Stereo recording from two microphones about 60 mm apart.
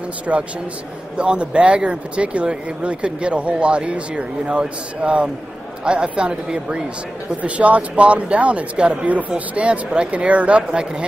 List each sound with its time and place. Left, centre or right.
0.3 s speech: right